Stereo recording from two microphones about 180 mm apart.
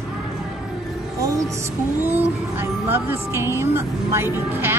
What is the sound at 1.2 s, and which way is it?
Music, 15° right (ahead or behind).